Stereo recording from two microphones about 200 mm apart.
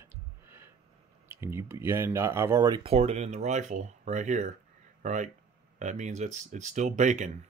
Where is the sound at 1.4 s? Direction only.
10° right (ahead or behind).